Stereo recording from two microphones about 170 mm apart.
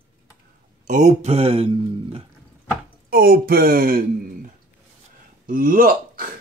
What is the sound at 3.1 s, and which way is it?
Speech, 60° right (ahead or behind).